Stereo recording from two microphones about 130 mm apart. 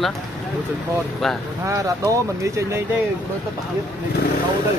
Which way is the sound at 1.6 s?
25° right (ahead or behind).